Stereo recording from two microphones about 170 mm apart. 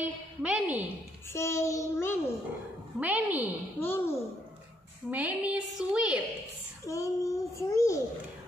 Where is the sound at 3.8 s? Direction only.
15° left (ahead or behind).